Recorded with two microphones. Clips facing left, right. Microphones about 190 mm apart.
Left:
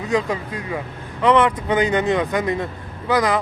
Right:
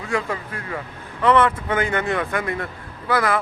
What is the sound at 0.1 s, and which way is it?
Speech, 15° left (ahead or behind).